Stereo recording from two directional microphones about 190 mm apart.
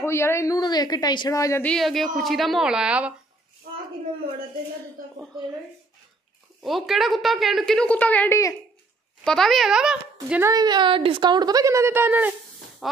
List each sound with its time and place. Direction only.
0.0 s a woman's voice: 15° left (ahead or behind); by 3.2 s 5° right (ahead or behind)
6.6 s a woman's voice: centre (ahead or behind); by 8.5 s 15° left (ahead or behind)
9.2 s a woman's voice: centre (ahead or behind)
10.3 s a woman's voice: 15° right (ahead or behind)